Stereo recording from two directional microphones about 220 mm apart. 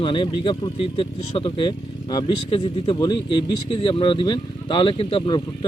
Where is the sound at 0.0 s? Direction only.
25° left (ahead or behind).